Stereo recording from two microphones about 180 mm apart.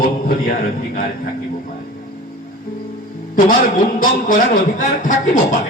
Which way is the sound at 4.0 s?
50° left (ahead or behind).